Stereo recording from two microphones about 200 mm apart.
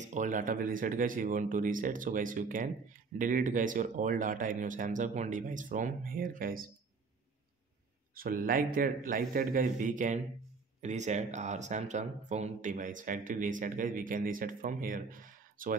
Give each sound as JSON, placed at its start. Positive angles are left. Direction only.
{"t": 0.0, "sound": "speech", "side_deg": -40}
{"t": 8.1, "sound": "a man's voice", "side_deg": -45}